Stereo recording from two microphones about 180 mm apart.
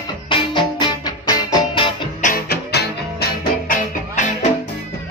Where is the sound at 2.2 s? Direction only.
50° left (ahead or behind).